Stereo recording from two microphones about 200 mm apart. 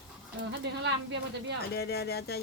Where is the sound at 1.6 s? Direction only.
50° left (ahead or behind).